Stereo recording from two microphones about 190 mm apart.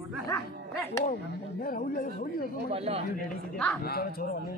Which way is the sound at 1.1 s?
45° left (ahead or behind).